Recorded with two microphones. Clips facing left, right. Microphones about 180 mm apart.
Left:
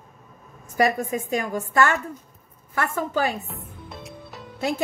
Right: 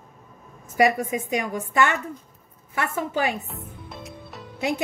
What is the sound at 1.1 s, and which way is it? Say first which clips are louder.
Speech: left 1 dB; 20° right (ahead or behind).